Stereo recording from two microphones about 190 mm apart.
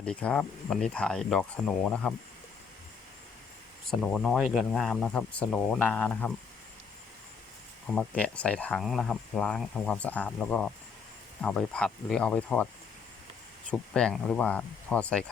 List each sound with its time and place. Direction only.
0.0 s speech: 5° left (ahead or behind)
3.8 s speech: centre (ahead or behind)
7.9 s speech: 5° left (ahead or behind)
13.7 s speech: 5° left (ahead or behind)